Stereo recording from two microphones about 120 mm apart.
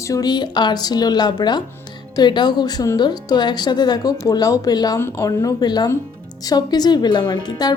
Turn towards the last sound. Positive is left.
turn(degrees=35)  # may be behind; listen again after turning